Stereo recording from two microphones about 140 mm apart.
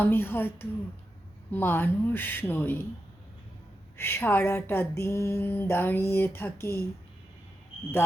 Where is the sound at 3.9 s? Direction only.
15° left (ahead or behind).